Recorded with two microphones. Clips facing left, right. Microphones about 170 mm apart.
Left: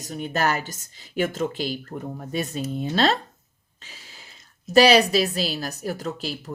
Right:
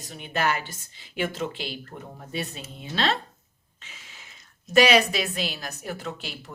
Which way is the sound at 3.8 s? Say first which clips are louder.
Left 2 dB; 35° left (ahead or behind).